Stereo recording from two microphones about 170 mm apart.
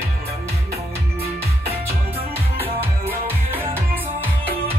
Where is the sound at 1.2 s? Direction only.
35° right (ahead or behind).